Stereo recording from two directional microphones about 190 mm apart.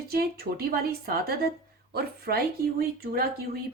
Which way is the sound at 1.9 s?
55° right (ahead or behind).